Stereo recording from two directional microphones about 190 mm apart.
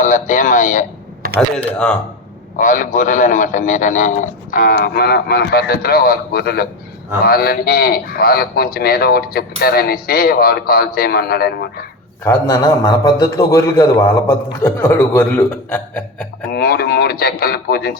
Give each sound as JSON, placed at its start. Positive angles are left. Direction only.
{"t": 0.0, "sound": "a man's voice", "side_deg": 40}
{"t": 1.5, "sound": "speech", "side_deg": 5}
{"t": 2.6, "sound": "a man's voice", "side_deg": 45}
{"t": 12.2, "sound": "a man's voice", "side_deg": 15}
{"t": 16.5, "sound": "a man's voice", "side_deg": 55}